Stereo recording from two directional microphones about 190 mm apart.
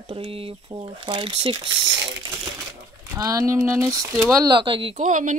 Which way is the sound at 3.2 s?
15° right (ahead or behind).